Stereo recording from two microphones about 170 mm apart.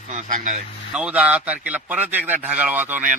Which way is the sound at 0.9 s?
5° right (ahead or behind).